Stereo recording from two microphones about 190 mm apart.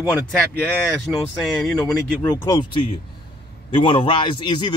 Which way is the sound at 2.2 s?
20° left (ahead or behind).